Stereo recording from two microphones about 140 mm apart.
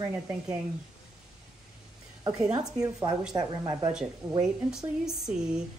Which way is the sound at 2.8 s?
25° right (ahead or behind).